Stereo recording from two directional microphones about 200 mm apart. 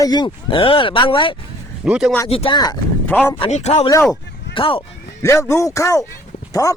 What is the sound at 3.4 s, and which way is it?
Speech, 35° left (ahead or behind).